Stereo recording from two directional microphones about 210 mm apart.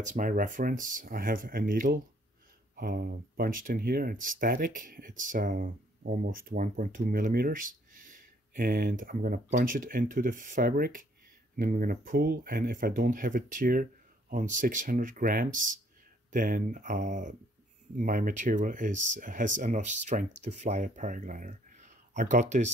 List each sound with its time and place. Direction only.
0.0 s speech: 40° right (ahead or behind)